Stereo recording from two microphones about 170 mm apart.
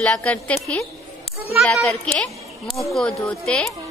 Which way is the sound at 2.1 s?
Centre (ahead or behind).